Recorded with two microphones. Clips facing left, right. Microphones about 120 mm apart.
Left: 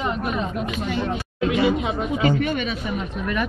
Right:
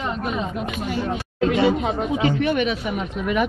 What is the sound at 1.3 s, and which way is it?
Speech, 40° right (ahead or behind).